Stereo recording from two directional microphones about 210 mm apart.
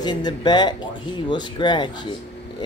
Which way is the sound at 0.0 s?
20° left (ahead or behind).